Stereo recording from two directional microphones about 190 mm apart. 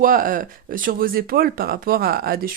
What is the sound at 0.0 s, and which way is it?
A woman's voice, 45° right (ahead or behind).